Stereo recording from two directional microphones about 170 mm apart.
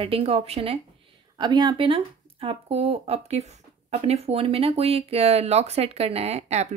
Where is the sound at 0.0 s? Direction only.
35° right (ahead or behind).